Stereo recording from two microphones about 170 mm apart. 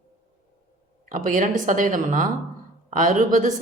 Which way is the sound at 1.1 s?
50° right (ahead or behind).